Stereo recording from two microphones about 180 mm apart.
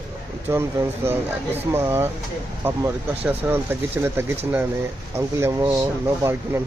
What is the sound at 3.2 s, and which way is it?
Speech, 10° right (ahead or behind).